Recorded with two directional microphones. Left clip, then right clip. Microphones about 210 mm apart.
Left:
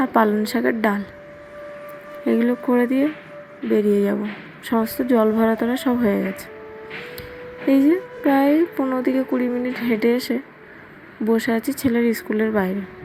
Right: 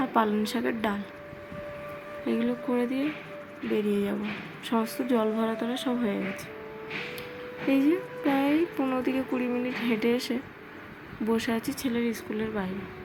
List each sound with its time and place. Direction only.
0.0 s a woman's voice: 20° left (ahead or behind)
2.2 s a woman's voice: 25° left (ahead or behind)
7.7 s a woman's voice: 20° left (ahead or behind)